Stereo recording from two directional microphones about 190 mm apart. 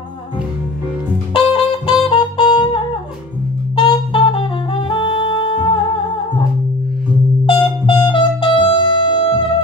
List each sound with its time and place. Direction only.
1.3 s saxophone: 25° left (ahead or behind)
7.4 s music: 25° left (ahead or behind)